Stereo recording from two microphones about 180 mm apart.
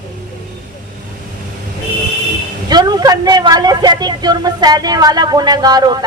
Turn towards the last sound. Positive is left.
turn(degrees=-20)  # may be behind; listen again after turning